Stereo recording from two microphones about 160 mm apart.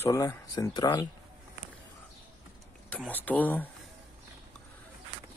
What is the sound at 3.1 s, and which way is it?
Speech, 10° left (ahead or behind).